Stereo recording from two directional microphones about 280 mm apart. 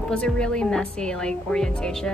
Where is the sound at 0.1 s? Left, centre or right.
Centre.